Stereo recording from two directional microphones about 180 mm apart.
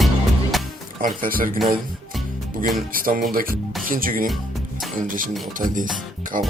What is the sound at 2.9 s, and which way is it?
Speech, 55° right (ahead or behind).